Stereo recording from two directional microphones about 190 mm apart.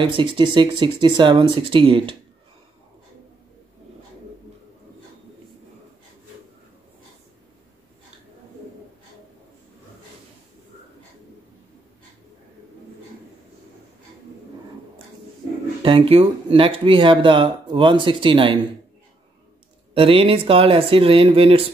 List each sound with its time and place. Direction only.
0.0 s speech: 25° right (ahead or behind)
15.8 s speech: 30° right (ahead or behind)
19.9 s speech: 30° right (ahead or behind)